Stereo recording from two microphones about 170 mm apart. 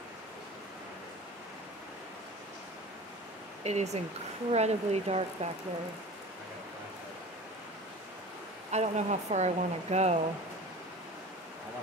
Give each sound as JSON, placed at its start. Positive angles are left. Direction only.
{"t": 3.6, "sound": "speech", "side_deg": -40}
{"t": 8.7, "sound": "speech", "side_deg": -40}